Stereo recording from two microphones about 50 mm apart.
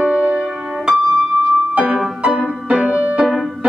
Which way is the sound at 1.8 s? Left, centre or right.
Centre.